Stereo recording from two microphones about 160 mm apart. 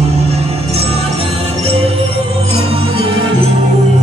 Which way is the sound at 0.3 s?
40° right (ahead or behind).